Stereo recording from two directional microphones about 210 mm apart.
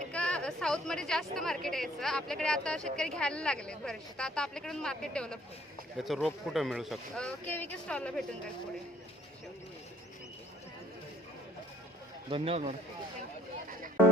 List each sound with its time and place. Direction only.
0.1 s a woman's voice: 5° left (ahead or behind)
12.3 s speech: 30° right (ahead or behind)